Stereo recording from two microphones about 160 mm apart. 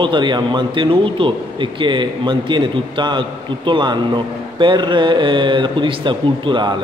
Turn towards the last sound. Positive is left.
turn(degrees=-30)  # may be behind; listen again after turning